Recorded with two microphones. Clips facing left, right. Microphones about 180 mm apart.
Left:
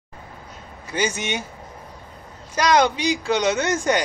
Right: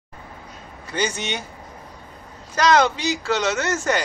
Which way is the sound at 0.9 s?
10° left (ahead or behind).